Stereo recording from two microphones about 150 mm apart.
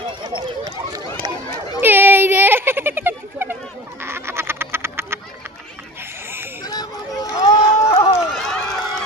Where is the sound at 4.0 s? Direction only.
15° right (ahead or behind).